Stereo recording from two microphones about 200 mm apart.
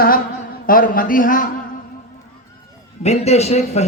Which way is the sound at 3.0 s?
30° left (ahead or behind).